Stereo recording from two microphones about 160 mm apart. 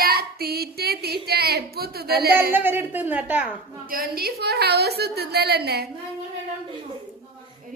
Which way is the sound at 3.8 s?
70° right (ahead or behind).